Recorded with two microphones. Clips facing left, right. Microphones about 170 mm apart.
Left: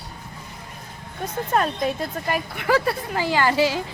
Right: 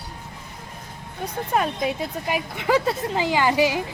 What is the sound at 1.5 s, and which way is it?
Speech, 10° right (ahead or behind).